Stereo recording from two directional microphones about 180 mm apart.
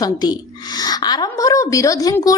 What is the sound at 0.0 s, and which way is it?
A woman's voice, 20° left (ahead or behind).